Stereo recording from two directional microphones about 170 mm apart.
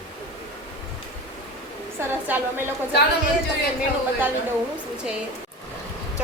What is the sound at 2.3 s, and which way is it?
Speech, 10° right (ahead or behind).